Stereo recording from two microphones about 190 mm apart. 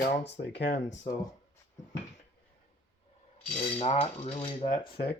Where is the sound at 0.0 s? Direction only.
60° left (ahead or behind).